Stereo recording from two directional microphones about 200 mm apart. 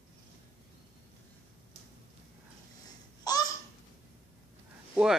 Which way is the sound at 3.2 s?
20° left (ahead or behind).